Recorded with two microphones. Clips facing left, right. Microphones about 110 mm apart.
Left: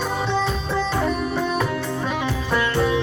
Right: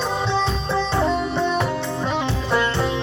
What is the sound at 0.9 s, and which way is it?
Music, 25° right (ahead or behind).